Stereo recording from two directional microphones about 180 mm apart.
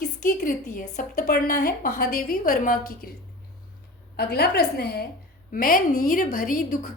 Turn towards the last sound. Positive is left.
turn(degrees=50)  # may be behind; listen again after turning